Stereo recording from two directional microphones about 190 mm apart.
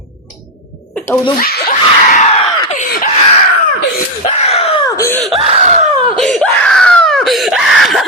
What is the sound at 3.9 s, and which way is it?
Screaming, 35° left (ahead or behind).